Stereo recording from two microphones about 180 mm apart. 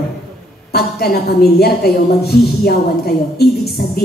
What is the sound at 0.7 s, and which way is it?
A woman's voice, 60° left (ahead or behind).